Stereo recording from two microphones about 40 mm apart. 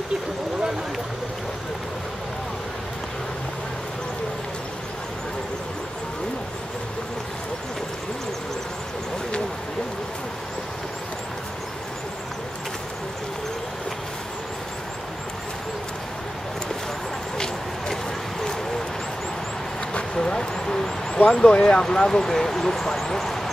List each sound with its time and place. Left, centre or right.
20.2 s vehicle: centre
21.3 s speech: centre
21.8 s speech: centre
23.0 s vehicle: centre